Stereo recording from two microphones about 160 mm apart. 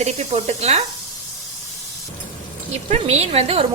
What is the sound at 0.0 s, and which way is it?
Speech, 45° right (ahead or behind).